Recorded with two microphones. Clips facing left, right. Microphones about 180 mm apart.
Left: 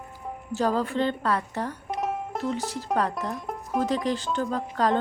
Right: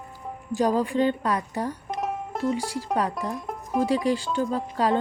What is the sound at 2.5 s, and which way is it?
Speech, 10° right (ahead or behind).